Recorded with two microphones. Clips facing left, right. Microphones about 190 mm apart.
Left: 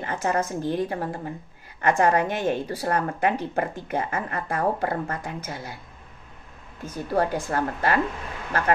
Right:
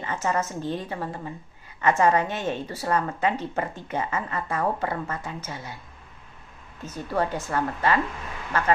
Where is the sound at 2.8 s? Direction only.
55° left (ahead or behind).